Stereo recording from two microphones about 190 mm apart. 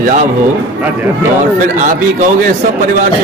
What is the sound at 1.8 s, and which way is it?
A man's voice, 45° right (ahead or behind).